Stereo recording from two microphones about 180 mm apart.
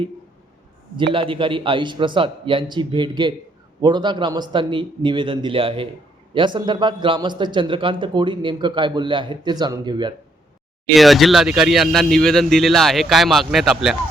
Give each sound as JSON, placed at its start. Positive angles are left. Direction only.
{"t": 1.1, "sound": "a man's voice", "side_deg": -30}
{"t": 10.9, "sound": "speech", "side_deg": 0}